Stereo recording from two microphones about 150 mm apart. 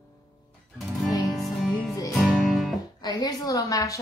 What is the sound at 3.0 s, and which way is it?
Speech, 25° left (ahead or behind).